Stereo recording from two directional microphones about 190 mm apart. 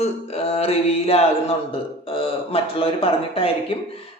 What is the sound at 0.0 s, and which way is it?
Music, 30° left (ahead or behind).